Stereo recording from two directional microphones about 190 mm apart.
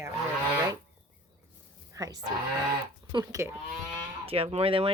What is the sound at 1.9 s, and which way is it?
Speech, 15° right (ahead or behind).